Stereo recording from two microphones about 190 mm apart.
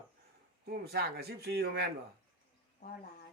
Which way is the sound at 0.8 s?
55° right (ahead or behind).